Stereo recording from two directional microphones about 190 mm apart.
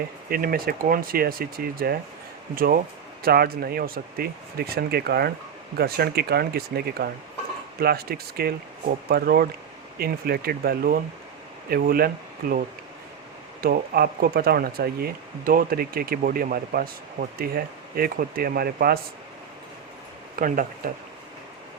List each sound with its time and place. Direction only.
0.3 s speech: 50° right (ahead or behind)
3.2 s speech: 55° right (ahead or behind)
20.3 s speech: 45° right (ahead or behind)